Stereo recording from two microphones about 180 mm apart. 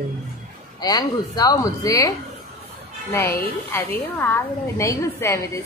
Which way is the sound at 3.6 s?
15° left (ahead or behind).